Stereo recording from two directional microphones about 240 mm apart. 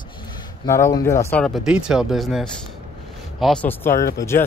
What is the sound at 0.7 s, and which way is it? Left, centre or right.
Speech, centre.